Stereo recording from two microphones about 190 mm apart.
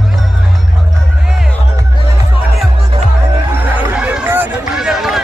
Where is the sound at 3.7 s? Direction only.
10° right (ahead or behind).